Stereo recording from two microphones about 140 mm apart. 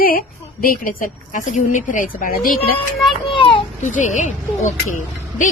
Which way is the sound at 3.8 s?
60° left (ahead or behind).